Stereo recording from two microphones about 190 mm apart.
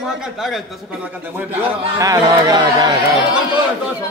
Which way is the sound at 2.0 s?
20° right (ahead or behind).